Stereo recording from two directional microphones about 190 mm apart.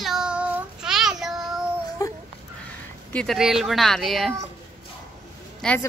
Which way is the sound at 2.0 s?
15° left (ahead or behind).